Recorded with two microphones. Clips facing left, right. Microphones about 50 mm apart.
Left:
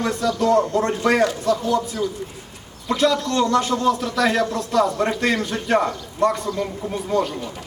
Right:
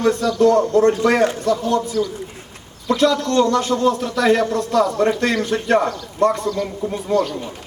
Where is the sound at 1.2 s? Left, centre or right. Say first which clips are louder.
Right 2 dB; right.